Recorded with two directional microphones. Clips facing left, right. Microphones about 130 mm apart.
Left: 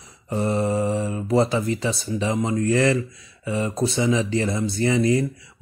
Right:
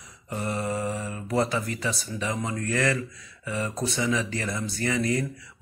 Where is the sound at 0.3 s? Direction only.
30° left (ahead or behind).